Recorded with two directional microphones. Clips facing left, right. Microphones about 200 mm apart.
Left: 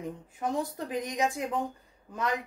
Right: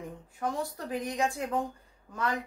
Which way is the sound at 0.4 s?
20° left (ahead or behind).